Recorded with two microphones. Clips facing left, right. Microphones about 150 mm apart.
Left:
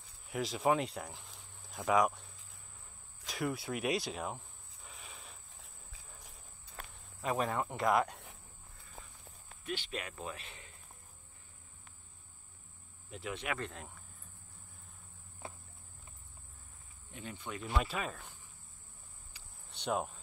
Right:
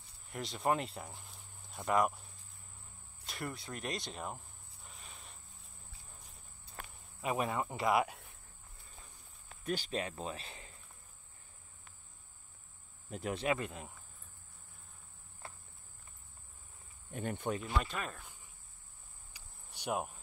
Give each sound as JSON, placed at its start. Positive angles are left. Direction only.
{"t": 0.3, "sound": "speech", "side_deg": 0}
{"t": 3.3, "sound": "cricket", "side_deg": 0}
{"t": 7.2, "sound": "speech", "side_deg": -5}
{"t": 9.7, "sound": "speech", "side_deg": -35}
{"t": 13.1, "sound": "speech", "side_deg": -40}
{"t": 13.6, "sound": "speech", "side_deg": -5}
{"t": 17.1, "sound": "speech", "side_deg": -55}
{"t": 17.6, "sound": "speech", "side_deg": 5}
{"t": 19.3, "sound": "cricket", "side_deg": -10}